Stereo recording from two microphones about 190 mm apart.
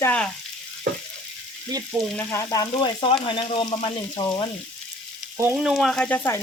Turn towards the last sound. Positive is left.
turn(degrees=10)  # may be behind; listen again after turning